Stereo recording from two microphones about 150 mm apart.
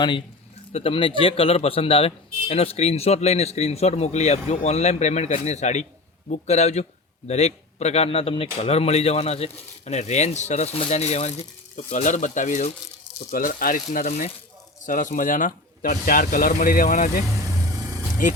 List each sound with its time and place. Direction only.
0.7 s speech: 40° left (ahead or behind); by 17.1 s 65° left (ahead or behind)
18.2 s speech: 60° left (ahead or behind)